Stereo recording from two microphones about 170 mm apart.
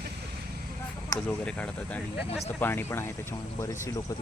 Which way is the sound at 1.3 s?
5° left (ahead or behind).